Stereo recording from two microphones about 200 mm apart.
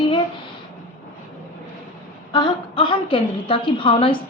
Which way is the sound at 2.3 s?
20° left (ahead or behind).